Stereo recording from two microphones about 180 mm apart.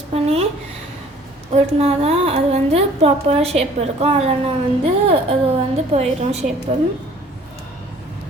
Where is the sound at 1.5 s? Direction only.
35° right (ahead or behind).